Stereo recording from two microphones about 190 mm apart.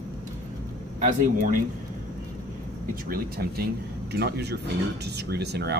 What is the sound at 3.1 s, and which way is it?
Speech, 55° right (ahead or behind).